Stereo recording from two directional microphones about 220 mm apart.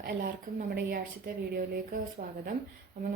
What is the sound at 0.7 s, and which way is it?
A woman's voice, 45° right (ahead or behind).